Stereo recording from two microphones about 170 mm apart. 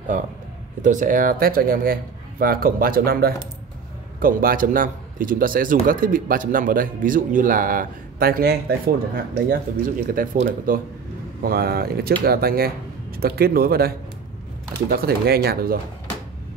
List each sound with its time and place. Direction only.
0.1 s speech: 50° right (ahead or behind)
11.4 s speech: 65° right (ahead or behind)